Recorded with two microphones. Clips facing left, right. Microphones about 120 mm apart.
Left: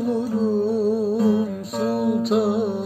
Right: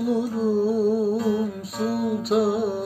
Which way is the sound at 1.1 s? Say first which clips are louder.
Left 4 dB; 30° left (ahead or behind).